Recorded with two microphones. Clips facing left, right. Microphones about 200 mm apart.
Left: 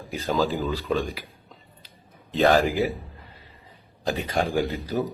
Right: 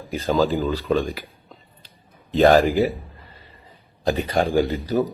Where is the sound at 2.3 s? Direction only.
Centre (ahead or behind).